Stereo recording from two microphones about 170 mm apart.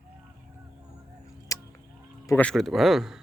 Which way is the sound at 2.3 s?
10° left (ahead or behind).